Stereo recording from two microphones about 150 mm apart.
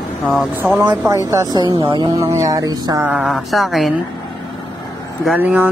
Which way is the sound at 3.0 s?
10° right (ahead or behind).